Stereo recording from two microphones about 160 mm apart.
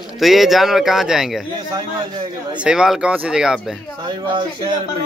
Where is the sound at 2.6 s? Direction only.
5° right (ahead or behind).